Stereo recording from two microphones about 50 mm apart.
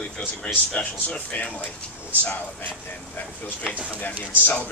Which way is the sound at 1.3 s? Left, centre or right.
Left.